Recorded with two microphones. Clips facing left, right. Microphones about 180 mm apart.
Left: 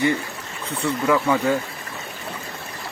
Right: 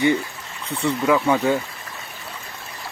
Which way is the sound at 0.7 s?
20° right (ahead or behind).